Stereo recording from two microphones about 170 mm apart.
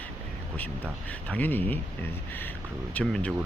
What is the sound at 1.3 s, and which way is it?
Speech, 10° left (ahead or behind).